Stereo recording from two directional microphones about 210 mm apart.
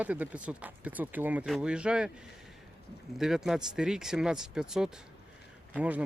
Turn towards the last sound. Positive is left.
turn(degrees=-5)  # may be behind; listen again after turning